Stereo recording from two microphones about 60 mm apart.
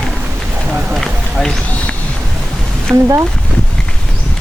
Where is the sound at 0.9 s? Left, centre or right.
Centre.